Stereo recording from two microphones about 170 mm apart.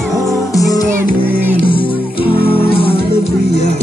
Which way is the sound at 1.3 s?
10° right (ahead or behind).